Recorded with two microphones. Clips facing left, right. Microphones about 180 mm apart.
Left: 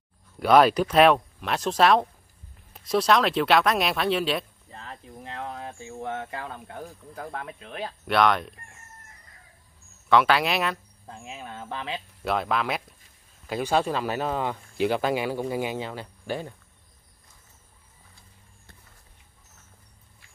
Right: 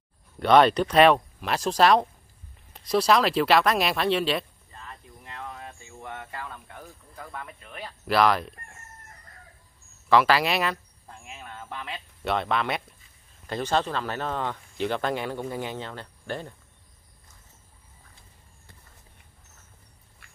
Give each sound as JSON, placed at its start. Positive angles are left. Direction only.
{"t": 0.4, "sound": "speech", "side_deg": 5}
{"t": 4.6, "sound": "cricket", "side_deg": 90}
{"t": 7.4, "sound": "speech", "side_deg": 90}
{"t": 8.1, "sound": "speech", "side_deg": 0}
{"t": 10.0, "sound": "speech", "side_deg": 0}
{"t": 11.5, "sound": "speech", "side_deg": 90}
{"t": 12.3, "sound": "speech", "side_deg": 0}